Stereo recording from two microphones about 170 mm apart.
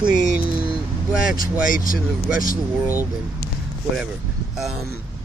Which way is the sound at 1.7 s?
55° left (ahead or behind).